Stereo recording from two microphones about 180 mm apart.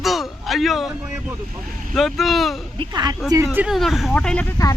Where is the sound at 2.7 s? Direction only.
20° right (ahead or behind); by 4.5 s 5° left (ahead or behind).